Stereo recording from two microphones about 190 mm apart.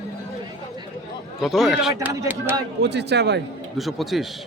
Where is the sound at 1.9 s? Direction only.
15° right (ahead or behind).